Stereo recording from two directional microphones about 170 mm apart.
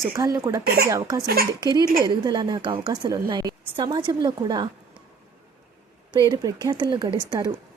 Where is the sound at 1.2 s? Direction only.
65° right (ahead or behind).